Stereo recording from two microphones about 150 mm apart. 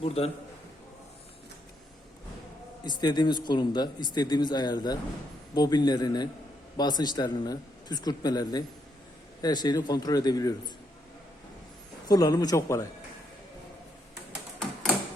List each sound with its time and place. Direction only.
0.0 s a man's voice: 40° left (ahead or behind)
2.8 s speech: 30° left (ahead or behind)
12.0 s speech: 25° left (ahead or behind)